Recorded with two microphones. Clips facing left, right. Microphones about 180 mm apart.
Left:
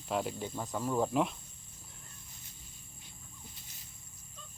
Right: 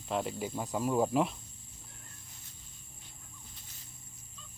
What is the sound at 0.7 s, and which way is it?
Speech, 10° right (ahead or behind).